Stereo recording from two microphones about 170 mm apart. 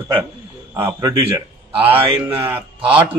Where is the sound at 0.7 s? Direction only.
20° right (ahead or behind).